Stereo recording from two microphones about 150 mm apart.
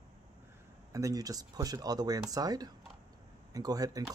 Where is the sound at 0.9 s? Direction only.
25° right (ahead or behind).